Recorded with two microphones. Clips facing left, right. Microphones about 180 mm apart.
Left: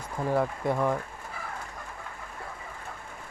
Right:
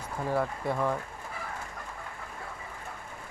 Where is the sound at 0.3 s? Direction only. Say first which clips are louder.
Left 3 dB; 15° left (ahead or behind).